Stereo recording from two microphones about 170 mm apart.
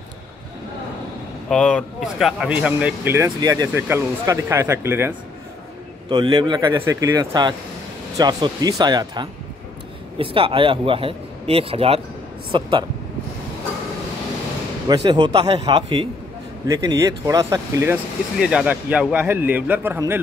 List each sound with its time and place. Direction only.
1.5 s speech: 5° left (ahead or behind); by 3.3 s 10° right (ahead or behind)
3.3 s speech: 25° right (ahead or behind)
6.0 s speech: 25° right (ahead or behind)
15.0 s speech: 25° right (ahead or behind)
18.4 s speech: 5° right (ahead or behind)